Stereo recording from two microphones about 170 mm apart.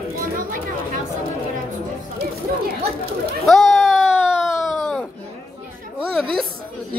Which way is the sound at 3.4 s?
Centre (ahead or behind).